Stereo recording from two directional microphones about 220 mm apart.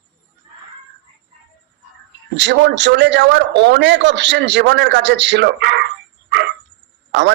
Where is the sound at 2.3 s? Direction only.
50° right (ahead or behind).